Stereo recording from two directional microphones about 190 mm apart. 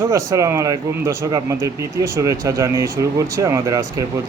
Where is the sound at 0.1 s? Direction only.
15° right (ahead or behind).